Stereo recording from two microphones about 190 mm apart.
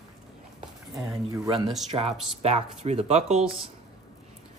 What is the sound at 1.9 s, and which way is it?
Speech, 35° right (ahead or behind).